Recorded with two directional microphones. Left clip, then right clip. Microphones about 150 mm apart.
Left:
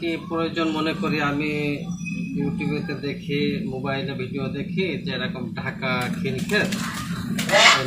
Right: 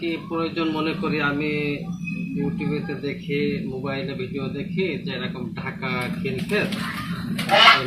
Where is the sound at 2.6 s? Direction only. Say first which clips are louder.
Even; 15° left (ahead or behind).